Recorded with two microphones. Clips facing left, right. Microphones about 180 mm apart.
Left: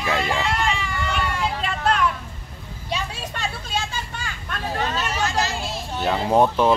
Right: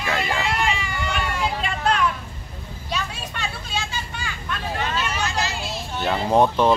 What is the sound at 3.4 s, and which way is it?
Vehicle, 45° left (ahead or behind).